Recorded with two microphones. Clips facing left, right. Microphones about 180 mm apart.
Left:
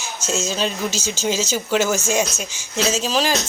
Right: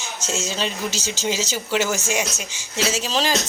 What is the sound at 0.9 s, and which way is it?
Speech, 15° right (ahead or behind).